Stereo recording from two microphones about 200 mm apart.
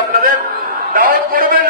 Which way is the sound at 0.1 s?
45° right (ahead or behind).